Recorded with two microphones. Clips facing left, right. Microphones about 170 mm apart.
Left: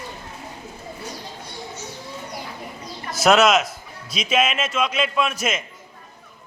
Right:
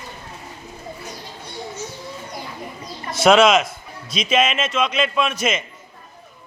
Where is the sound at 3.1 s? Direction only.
Centre (ahead or behind).